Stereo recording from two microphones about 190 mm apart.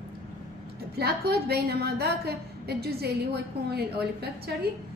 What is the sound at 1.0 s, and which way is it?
A woman's voice, 55° right (ahead or behind).